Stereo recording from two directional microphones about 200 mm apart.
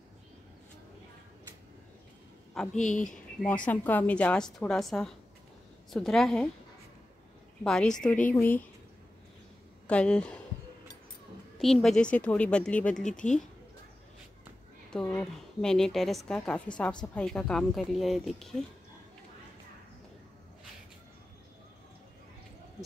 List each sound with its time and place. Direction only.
2.7 s speech: 40° left (ahead or behind)
3.4 s a woman's voice: 5° left (ahead or behind)
7.6 s a woman's voice: 5° left (ahead or behind)
9.8 s a woman's voice: 5° left (ahead or behind)
11.5 s a woman's voice: centre (ahead or behind)
14.9 s a woman's voice: 5° left (ahead or behind)